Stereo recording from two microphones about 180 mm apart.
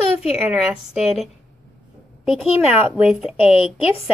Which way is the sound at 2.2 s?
5° right (ahead or behind).